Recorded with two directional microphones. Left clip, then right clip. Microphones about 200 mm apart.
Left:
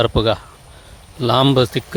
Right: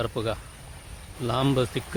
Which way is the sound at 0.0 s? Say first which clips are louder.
Left 12 dB; 40° left (ahead or behind).